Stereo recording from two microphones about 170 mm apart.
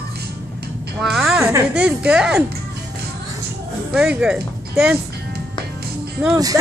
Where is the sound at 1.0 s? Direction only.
Centre (ahead or behind).